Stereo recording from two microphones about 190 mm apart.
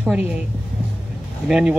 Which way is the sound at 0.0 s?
5° right (ahead or behind).